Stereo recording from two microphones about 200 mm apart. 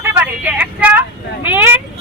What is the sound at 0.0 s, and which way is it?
A woman's voice, 10° right (ahead or behind).